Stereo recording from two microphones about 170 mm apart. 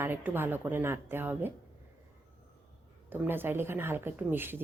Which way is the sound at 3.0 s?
10° right (ahead or behind).